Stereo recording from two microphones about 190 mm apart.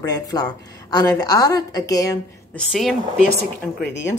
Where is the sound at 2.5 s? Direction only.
Centre (ahead or behind).